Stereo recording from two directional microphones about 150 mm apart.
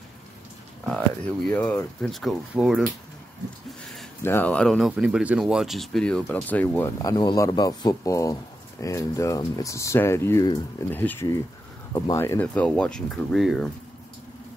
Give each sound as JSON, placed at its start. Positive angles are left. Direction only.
{"t": 0.8, "sound": "speech", "side_deg": 5}
{"t": 1.5, "sound": "speech", "side_deg": 15}
{"t": 2.0, "sound": "speech", "side_deg": 0}
{"t": 4.2, "sound": "speech", "side_deg": 15}
{"t": 7.0, "sound": "speech", "side_deg": 25}